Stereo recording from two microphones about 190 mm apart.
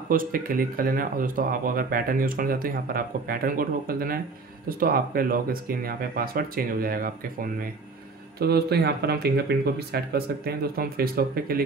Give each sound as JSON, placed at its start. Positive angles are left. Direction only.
{"t": 0.1, "sound": "speech", "side_deg": -50}
{"t": 8.4, "sound": "speech", "side_deg": -55}